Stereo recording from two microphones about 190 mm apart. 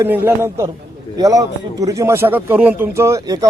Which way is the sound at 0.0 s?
10° right (ahead or behind).